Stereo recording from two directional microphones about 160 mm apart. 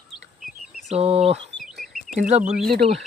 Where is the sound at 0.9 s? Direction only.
40° right (ahead or behind).